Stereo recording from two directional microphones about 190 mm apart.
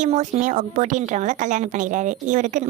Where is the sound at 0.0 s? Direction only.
40° right (ahead or behind).